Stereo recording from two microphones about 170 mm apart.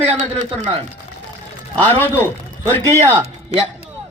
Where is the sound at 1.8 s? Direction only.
10° left (ahead or behind).